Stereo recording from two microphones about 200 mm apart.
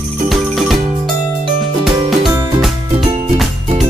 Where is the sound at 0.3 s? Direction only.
Centre (ahead or behind).